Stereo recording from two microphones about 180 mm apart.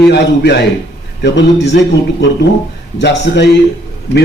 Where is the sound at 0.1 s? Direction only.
70° left (ahead or behind).